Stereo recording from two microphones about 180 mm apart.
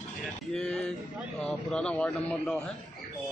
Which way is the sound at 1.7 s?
5° left (ahead or behind).